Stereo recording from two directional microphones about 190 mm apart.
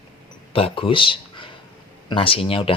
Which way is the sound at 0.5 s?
30° left (ahead or behind).